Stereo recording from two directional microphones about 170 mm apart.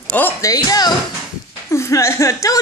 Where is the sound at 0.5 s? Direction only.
20° left (ahead or behind).